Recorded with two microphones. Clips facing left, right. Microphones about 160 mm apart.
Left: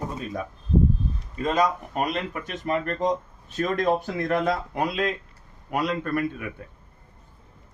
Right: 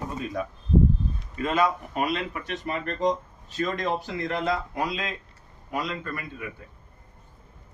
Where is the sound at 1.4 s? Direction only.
40° left (ahead or behind); by 6.2 s 65° left (ahead or behind).